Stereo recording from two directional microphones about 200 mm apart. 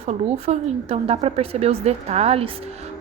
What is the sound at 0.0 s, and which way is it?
A woman's voice, 30° right (ahead or behind).